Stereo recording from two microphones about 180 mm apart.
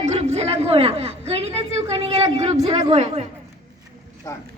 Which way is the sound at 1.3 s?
35° right (ahead or behind).